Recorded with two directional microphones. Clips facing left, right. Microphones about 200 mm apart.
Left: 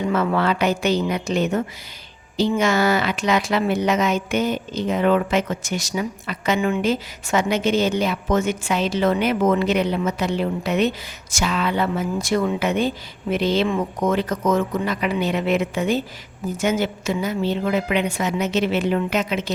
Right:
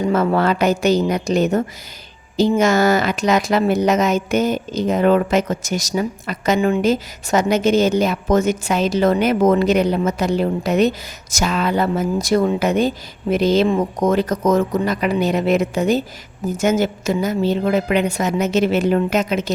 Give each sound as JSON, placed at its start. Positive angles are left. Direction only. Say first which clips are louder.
{"t": 0.0, "sound": "a woman's voice", "louder": "right 4 dB", "side_deg": -40}